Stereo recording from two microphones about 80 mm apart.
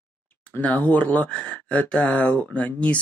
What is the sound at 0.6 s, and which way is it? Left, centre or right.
Speech, centre.